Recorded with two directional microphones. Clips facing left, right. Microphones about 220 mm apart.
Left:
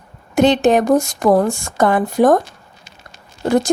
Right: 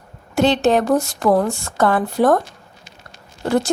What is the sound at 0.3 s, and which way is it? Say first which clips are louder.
A woman's voice: left 3 dB; 15° left (ahead or behind).